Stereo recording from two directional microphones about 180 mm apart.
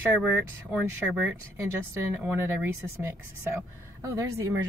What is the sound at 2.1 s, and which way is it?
Speech, 15° right (ahead or behind).